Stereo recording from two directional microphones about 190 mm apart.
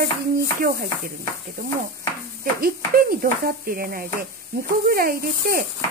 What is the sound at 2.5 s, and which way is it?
Speech, 50° right (ahead or behind).